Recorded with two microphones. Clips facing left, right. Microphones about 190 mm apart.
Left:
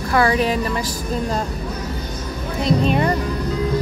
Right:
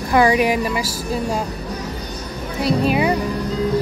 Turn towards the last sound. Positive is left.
turn(degrees=-5)  # may be behind; listen again after turning